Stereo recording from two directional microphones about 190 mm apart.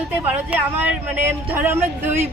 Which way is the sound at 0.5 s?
10° right (ahead or behind).